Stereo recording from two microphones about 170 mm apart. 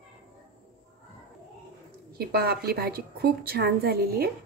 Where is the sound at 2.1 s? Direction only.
70° right (ahead or behind).